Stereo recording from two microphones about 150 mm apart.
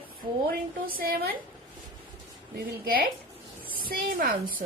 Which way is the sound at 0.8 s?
80° right.